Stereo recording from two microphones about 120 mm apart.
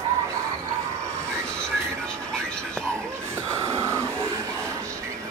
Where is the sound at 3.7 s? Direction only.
20° right (ahead or behind).